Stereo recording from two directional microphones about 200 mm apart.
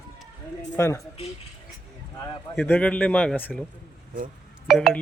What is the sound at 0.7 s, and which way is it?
Speech, 15° left (ahead or behind).